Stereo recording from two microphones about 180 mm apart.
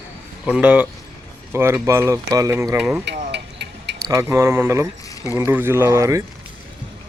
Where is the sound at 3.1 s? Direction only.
70° right (ahead or behind).